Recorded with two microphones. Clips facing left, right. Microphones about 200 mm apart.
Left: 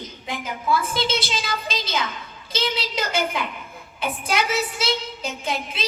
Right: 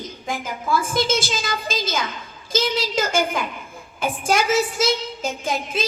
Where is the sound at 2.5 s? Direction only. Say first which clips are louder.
Right 5 dB; 45° right (ahead or behind).